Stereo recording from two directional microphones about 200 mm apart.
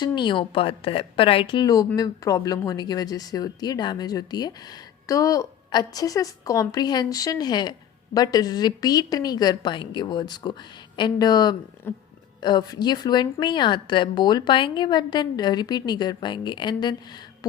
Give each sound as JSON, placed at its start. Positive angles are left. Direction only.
{"t": 0.0, "sound": "a woman's voice", "side_deg": 25}